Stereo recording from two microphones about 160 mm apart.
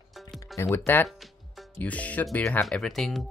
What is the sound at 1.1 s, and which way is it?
Speech, 5° left (ahead or behind).